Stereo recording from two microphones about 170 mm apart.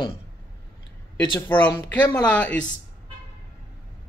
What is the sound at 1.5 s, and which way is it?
Speech, 10° left (ahead or behind).